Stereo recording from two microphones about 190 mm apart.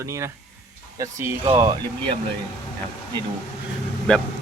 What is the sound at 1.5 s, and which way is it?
Speech, 25° right (ahead or behind).